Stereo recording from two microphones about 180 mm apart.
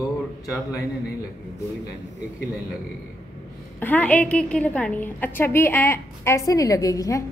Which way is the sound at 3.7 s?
10° left (ahead or behind).